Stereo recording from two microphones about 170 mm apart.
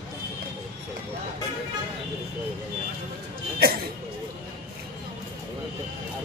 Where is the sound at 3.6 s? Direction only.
65° right (ahead or behind).